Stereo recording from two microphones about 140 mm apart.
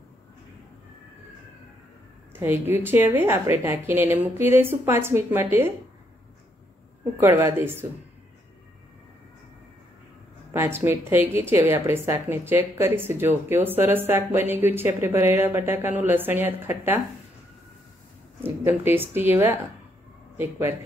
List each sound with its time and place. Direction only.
2.3 s a woman's voice: 15° right (ahead or behind)
7.2 s a woman's voice: 20° right (ahead or behind)
10.5 s a woman's voice: 15° right (ahead or behind)
18.4 s a woman's voice: 15° right (ahead or behind)